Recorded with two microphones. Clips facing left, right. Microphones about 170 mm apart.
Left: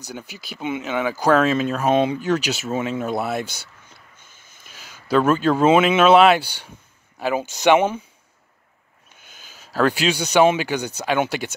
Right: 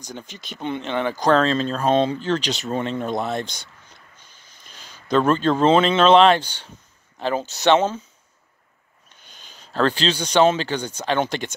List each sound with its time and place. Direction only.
0.0 s speech: 5° left (ahead or behind)
4.2 s a sound: 50° left (ahead or behind)
4.6 s speech: 5° left (ahead or behind)
9.1 s speech: 5° left (ahead or behind)